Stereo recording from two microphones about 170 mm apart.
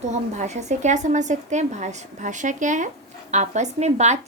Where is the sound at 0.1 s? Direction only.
45° right (ahead or behind).